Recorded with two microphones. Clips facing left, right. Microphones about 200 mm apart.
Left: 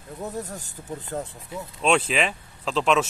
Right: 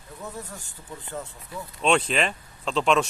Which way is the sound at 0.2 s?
40° left (ahead or behind).